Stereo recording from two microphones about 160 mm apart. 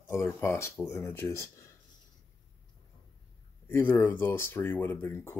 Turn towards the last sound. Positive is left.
turn(degrees=15)  # may be behind; listen again after turning